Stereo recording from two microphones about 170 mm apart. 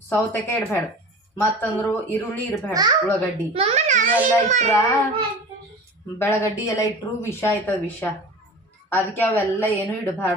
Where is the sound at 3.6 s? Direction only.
40° right (ahead or behind).